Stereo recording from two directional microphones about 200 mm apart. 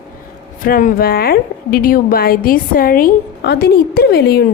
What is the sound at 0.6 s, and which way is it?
A woman's voice, 40° left (ahead or behind).